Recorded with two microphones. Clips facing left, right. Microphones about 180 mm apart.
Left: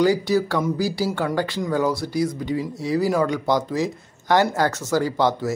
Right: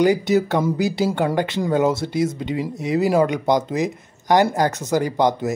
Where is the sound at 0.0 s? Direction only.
20° right (ahead or behind).